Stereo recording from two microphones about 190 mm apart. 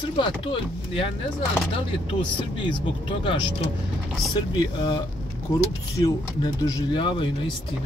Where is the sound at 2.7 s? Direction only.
25° left (ahead or behind).